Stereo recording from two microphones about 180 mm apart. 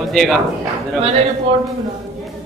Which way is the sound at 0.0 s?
Centre (ahead or behind).